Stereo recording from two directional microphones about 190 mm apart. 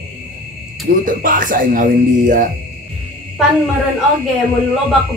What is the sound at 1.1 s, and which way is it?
Music, 45° right (ahead or behind).